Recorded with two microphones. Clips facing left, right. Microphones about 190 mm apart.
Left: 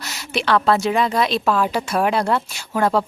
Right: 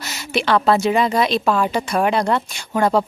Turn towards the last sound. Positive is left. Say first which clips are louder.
# right 2 dB
turn(degrees=0)  # may be behind; listen again after turning